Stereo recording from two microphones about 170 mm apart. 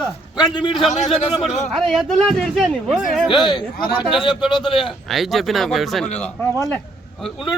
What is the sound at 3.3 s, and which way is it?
A man's voice, 25° left (ahead or behind).